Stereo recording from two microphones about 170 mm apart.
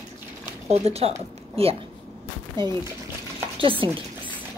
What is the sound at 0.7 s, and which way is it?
Speech, 35° right (ahead or behind).